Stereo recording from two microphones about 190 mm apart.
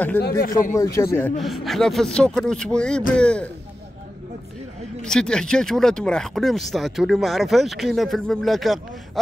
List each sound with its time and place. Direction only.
0.4 s speech: 45° left (ahead or behind)
0.7 s speech: 15° left (ahead or behind)
1.4 s speech: centre (ahead or behind)
5.0 s speech: 5° left (ahead or behind)